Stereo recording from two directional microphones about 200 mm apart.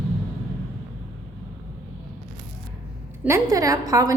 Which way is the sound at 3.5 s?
15° right (ahead or behind).